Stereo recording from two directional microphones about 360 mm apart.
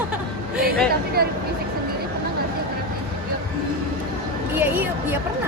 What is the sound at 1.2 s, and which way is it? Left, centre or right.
Speech, right.